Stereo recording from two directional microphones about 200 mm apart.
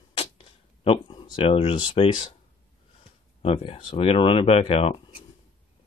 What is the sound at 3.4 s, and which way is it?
Speech, 30° left (ahead or behind).